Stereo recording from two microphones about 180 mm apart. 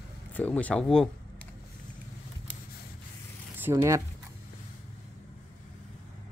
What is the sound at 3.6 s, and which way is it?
Speech, 15° right (ahead or behind).